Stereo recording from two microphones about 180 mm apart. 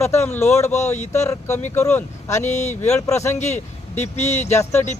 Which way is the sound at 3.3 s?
40° left (ahead or behind).